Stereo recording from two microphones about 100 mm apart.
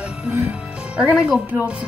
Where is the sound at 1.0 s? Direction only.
10° right (ahead or behind).